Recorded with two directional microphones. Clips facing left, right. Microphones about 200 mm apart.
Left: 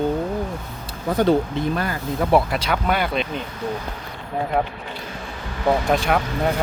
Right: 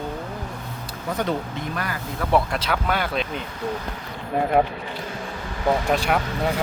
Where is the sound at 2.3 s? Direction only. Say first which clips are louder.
Left 2 dB; centre (ahead or behind).